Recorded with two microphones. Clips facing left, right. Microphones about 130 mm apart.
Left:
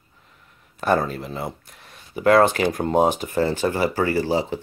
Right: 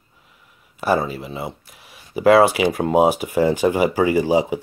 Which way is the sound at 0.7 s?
5° right (ahead or behind).